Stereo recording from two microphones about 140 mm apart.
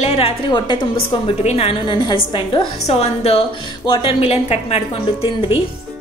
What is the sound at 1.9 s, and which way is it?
A woman's voice, 35° left (ahead or behind).